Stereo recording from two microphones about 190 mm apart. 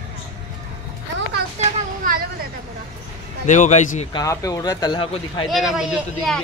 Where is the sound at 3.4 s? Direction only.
40° left (ahead or behind).